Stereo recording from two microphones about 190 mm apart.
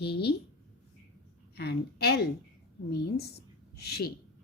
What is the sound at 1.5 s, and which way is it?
A woman's voice, 60° left (ahead or behind).